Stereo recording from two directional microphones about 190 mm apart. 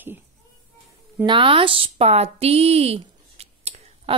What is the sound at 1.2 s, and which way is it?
A woman's voice, 25° right (ahead or behind).